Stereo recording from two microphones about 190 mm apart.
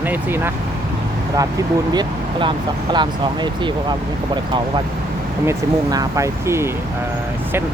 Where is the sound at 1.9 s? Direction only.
20° right (ahead or behind).